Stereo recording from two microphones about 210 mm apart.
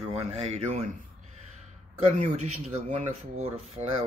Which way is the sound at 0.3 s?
30° right (ahead or behind).